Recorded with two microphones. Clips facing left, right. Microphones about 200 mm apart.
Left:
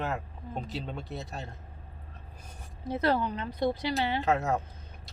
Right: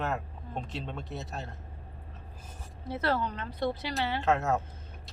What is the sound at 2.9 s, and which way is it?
Speech, 15° left (ahead or behind).